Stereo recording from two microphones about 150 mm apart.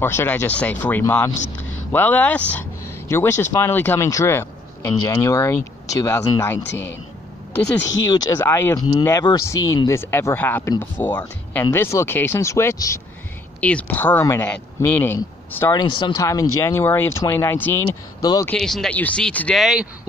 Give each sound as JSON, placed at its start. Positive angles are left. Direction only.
{"t": 0.0, "sound": "speech", "side_deg": 15}
{"t": 13.6, "sound": "speech", "side_deg": 10}
{"t": 15.7, "sound": "speech", "side_deg": 35}
{"t": 16.2, "sound": "speech", "side_deg": 20}
{"t": 17.8, "sound": "speech", "side_deg": 25}
{"t": 18.5, "sound": "speech", "side_deg": 0}